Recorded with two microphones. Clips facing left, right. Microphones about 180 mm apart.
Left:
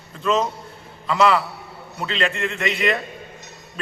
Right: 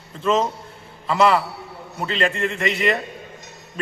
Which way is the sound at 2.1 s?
40° right (ahead or behind).